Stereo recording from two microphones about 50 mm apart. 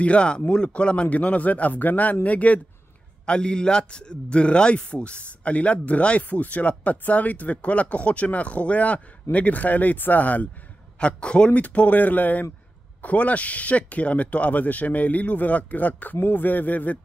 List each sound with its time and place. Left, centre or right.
0.0 s a man's voice: left
3.3 s a man's voice: centre; by 10.5 s left
11.0 s a man's voice: left
11.6 s speech: left